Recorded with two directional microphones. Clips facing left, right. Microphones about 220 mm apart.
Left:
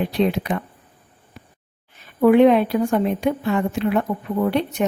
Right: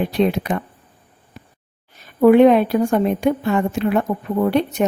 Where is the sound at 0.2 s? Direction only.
45° right (ahead or behind).